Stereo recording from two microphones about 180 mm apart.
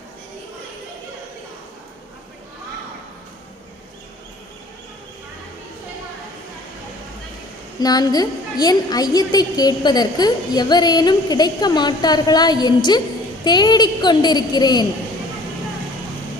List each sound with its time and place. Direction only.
7.8 s a woman's voice: 20° left (ahead or behind)